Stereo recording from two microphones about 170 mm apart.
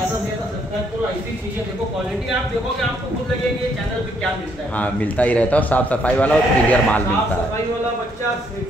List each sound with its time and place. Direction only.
4.7 s speech: 10° left (ahead or behind)